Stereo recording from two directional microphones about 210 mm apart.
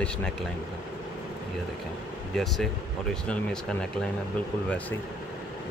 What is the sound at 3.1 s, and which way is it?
Speech, centre (ahead or behind).